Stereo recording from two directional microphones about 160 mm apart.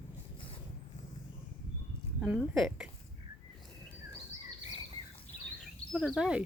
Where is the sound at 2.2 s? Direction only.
5° right (ahead or behind).